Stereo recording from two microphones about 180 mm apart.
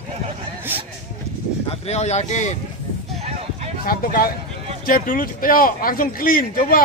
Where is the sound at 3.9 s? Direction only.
55° left (ahead or behind).